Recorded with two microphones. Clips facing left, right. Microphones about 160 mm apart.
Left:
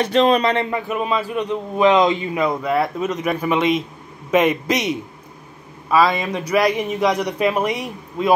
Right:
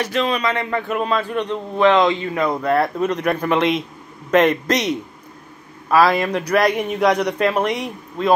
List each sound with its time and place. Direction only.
0.0 s a man's voice: 30° left (ahead or behind)
0.7 s a man's voice: 5° left (ahead or behind)
2.4 s a man's voice: 5° left (ahead or behind)